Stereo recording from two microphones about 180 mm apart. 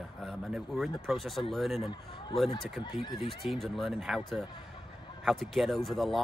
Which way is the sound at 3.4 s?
Centre (ahead or behind).